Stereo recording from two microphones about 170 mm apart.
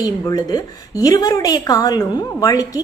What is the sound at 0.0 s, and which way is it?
A woman's voice, 20° left (ahead or behind).